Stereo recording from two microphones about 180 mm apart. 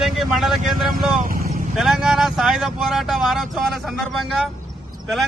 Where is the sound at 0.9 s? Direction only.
50° right (ahead or behind).